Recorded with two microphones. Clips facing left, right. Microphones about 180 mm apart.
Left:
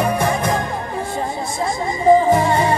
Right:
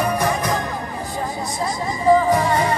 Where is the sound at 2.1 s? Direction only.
25° left (ahead or behind).